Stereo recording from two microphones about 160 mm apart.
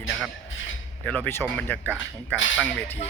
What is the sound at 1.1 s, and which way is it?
Speech, 10° left (ahead or behind).